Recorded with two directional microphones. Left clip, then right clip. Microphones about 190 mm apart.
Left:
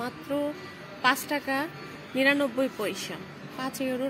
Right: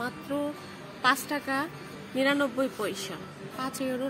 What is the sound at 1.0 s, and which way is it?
A woman's voice, 15° left (ahead or behind).